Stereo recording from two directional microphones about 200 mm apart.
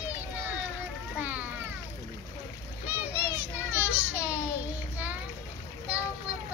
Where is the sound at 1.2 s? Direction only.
10° right (ahead or behind).